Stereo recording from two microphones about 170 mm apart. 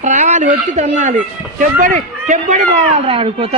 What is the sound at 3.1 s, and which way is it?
Speech, 35° right (ahead or behind).